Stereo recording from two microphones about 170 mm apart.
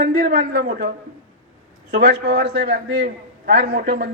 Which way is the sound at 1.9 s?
75° right (ahead or behind).